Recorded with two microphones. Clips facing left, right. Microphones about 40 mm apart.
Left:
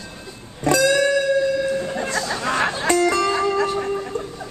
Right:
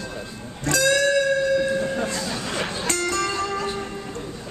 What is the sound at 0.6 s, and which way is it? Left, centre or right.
Music, left.